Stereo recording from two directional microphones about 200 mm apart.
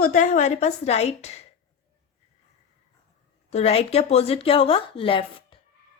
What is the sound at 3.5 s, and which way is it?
Speech, 30° left (ahead or behind).